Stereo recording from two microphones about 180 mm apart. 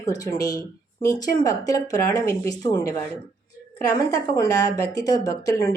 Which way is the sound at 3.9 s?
20° left (ahead or behind).